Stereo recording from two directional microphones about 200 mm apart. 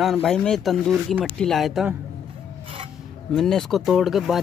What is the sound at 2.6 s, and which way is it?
Filing, 30° right (ahead or behind).